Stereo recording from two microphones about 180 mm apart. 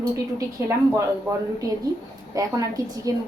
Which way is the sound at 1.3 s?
15° right (ahead or behind).